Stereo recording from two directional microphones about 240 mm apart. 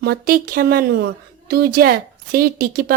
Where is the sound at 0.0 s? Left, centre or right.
Right.